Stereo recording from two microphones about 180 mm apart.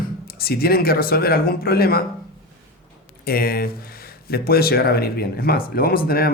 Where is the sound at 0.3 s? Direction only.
55° left (ahead or behind).